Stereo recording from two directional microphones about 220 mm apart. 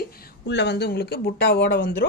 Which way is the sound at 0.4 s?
50° left (ahead or behind).